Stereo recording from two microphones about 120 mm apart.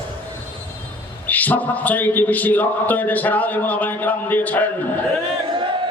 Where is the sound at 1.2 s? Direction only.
15° left (ahead or behind).